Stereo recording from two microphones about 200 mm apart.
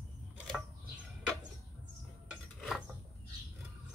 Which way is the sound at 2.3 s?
Centre (ahead or behind).